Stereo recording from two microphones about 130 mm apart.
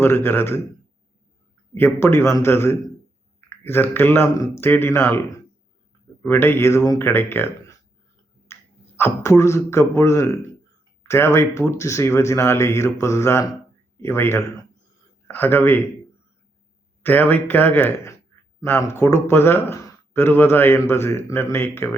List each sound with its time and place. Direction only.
0.0 s speech: 15° left (ahead or behind)
1.7 s speech: 15° left (ahead or behind)
6.2 s speech: 15° left (ahead or behind)
8.5 s a sound: 20° left (ahead or behind)
9.0 s speech: 20° left (ahead or behind)
17.0 s speech: 15° left (ahead or behind)